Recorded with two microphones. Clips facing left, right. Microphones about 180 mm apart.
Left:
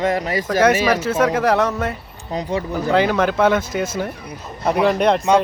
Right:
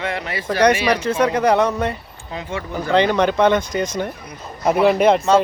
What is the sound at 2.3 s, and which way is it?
Speech, 40° left (ahead or behind).